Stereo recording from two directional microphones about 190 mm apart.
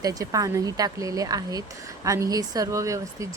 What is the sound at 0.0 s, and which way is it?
Speech, 20° right (ahead or behind).